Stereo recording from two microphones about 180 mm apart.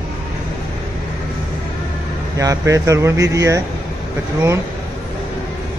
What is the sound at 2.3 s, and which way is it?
Speech, 15° right (ahead or behind).